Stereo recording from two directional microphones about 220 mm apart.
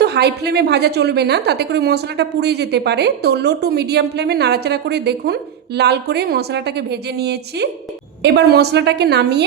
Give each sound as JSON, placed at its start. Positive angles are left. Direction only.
{"t": 0.0, "sound": "a woman's voice", "side_deg": -50}